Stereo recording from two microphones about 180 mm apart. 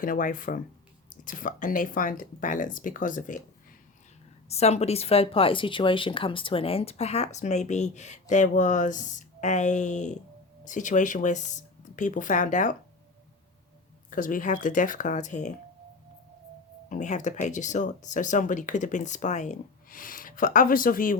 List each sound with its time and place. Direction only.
0.0 s speech: 50° left (ahead or behind)
4.4 s speech: 35° left (ahead or behind)
14.1 s speech: 50° left (ahead or behind)
16.9 s speech: 45° left (ahead or behind)